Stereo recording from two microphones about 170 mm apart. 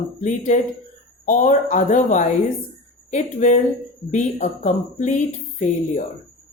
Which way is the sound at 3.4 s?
45° left (ahead or behind).